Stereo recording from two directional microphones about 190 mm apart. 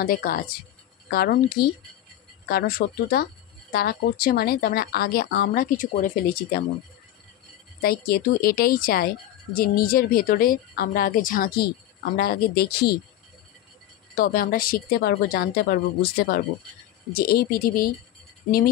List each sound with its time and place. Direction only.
0.0 s speech: 50° left (ahead or behind)
2.8 s speech: 55° left (ahead or behind)
7.8 s speech: 50° left (ahead or behind)
14.1 s speech: 50° left (ahead or behind)